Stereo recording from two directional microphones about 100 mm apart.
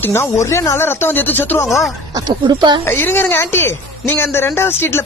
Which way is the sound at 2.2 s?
45° right (ahead or behind).